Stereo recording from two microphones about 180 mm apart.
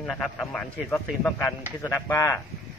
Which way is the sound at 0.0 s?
5° left (ahead or behind).